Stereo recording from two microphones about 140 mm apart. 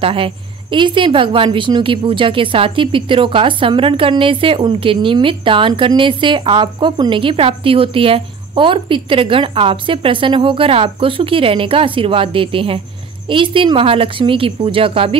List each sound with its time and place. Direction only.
0.0 s a woman's voice: 40° right (ahead or behind)